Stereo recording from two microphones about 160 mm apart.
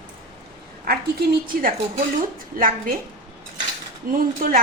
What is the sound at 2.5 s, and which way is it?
Speech, 65° right (ahead or behind).